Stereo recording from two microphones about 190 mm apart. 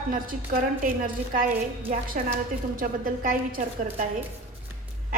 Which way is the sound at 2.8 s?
45° right (ahead or behind).